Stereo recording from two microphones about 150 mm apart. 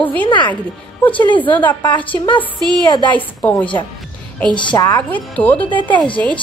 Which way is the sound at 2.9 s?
30° left (ahead or behind).